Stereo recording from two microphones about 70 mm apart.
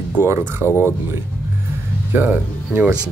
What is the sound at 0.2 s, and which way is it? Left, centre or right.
Speech, right.